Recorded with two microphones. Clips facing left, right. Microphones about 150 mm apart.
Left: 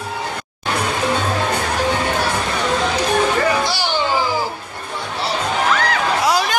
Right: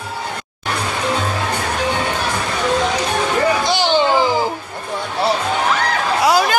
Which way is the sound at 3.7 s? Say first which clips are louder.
Right 5 dB; 20° right (ahead or behind).